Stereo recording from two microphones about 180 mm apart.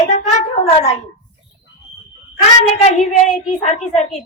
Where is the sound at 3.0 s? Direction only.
40° left (ahead or behind).